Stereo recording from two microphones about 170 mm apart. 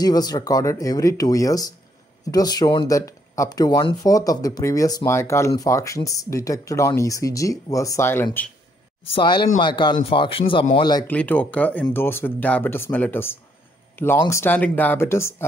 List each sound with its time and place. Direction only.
0.0 s speech: 25° left (ahead or behind)
9.1 s speech: 25° left (ahead or behind)
11.1 s speech: 10° left (ahead or behind)